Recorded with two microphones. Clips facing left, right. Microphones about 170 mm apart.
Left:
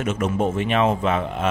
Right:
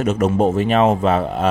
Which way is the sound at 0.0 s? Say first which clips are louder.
Right 6 dB; 35° right (ahead or behind).